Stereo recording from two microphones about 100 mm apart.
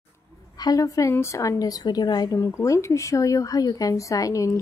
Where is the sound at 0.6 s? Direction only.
35° left (ahead or behind).